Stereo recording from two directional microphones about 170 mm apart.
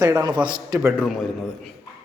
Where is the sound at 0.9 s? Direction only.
5° left (ahead or behind).